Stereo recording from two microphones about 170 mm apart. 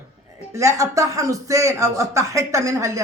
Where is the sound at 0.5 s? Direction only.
20° right (ahead or behind).